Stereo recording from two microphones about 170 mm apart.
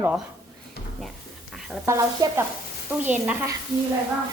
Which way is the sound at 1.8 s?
20° right (ahead or behind).